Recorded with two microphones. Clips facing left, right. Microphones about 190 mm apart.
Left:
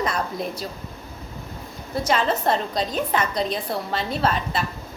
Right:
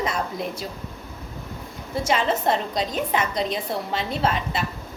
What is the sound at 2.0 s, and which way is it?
A woman's voice, 25° right (ahead or behind).